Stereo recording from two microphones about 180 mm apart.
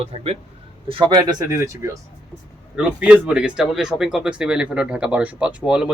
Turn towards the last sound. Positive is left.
turn(degrees=-5)  # may be behind; listen again after turning